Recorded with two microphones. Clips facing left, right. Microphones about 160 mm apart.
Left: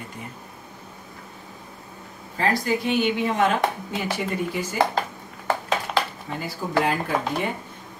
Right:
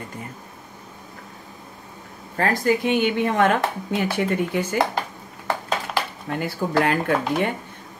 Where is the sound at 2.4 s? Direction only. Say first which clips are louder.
Right 3 dB; 50° right (ahead or behind).